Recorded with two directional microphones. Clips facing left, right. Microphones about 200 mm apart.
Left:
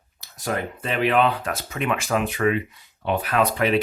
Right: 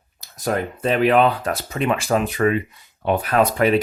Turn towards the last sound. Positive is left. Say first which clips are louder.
# right 4 dB
turn(degrees=-45)  # may be behind; listen again after turning